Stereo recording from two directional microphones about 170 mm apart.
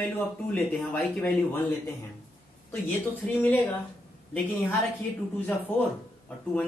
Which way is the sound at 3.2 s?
10° left (ahead or behind).